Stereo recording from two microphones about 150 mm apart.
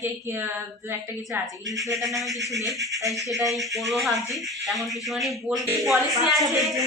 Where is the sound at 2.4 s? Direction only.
20° right (ahead or behind).